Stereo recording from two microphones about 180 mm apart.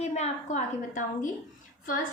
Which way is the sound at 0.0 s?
40° left (ahead or behind).